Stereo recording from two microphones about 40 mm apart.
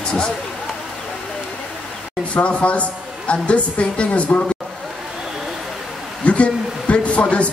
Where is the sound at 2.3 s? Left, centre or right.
Left.